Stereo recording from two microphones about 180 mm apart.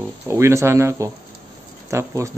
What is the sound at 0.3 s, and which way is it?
A man's voice, 15° right (ahead or behind).